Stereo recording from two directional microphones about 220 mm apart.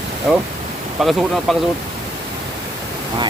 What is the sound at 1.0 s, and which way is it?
Speech, centre (ahead or behind).